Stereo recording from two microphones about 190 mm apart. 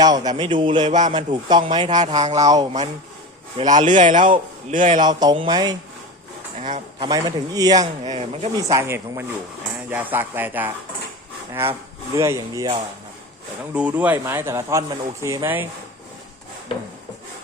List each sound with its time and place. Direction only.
0.0 s a man's voice: 20° right (ahead or behind)
0.9 s speech: 40° right (ahead or behind)
1.1 s a man's voice: 25° right (ahead or behind)
1.7 s speech: 35° right (ahead or behind)
2.4 s a man's voice: 20° right (ahead or behind)
3.7 s a man's voice: 40° right (ahead or behind)
5.0 s a man's voice: 25° right (ahead or behind)
6.6 s speech: 40° right (ahead or behind)
7.0 s a man's voice: 20° right (ahead or behind)
8.0 s speech: 35° right (ahead or behind)
8.7 s speech: 15° right (ahead or behind)
12.1 s speech: 15° right (ahead or behind)
13.7 s speech: 10° right (ahead or behind)